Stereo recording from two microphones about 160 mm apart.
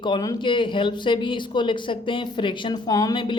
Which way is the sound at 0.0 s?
25° left (ahead or behind).